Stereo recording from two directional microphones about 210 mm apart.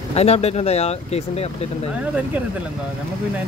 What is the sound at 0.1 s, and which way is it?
Speech, 30° left (ahead or behind).